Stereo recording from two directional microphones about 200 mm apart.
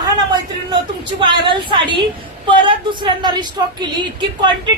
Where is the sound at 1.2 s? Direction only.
25° right (ahead or behind).